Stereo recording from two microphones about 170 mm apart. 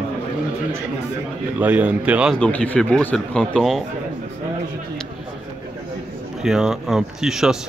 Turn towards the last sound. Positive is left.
turn(degrees=-5)  # may be behind; listen again after turning